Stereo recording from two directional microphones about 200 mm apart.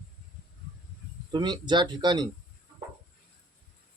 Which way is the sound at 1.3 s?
20° right (ahead or behind).